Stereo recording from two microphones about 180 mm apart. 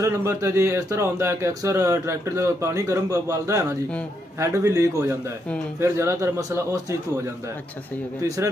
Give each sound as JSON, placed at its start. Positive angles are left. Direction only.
{"t": 0.0, "sound": "speech", "side_deg": -15}